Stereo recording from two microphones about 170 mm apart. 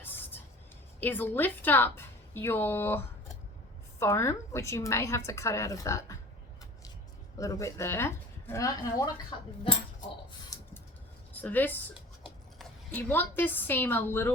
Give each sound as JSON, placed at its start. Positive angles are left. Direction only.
{"t": 0.0, "sound": "vehicle", "side_deg": 10}
{"t": 0.9, "sound": "a woman's voice", "side_deg": 10}
{"t": 7.3, "sound": "a woman's voice", "side_deg": 20}
{"t": 10.5, "sound": "a sound", "side_deg": 20}
{"t": 11.3, "sound": "a woman's voice", "side_deg": 10}